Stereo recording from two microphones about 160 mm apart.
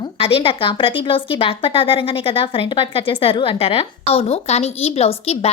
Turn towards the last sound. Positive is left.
turn(degrees=40)  # may be behind; listen again after turning